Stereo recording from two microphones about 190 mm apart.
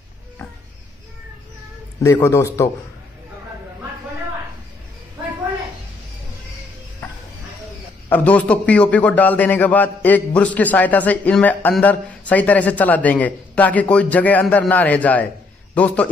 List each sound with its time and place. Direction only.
2.0 s a man's voice: 15° left (ahead or behind)
8.1 s a man's voice: 10° left (ahead or behind)